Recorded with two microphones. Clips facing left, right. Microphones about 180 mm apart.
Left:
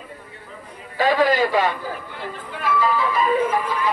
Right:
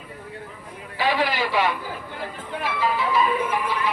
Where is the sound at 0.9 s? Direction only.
45° left (ahead or behind).